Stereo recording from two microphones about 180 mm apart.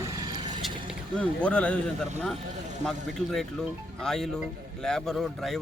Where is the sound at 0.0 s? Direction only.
20° right (ahead or behind).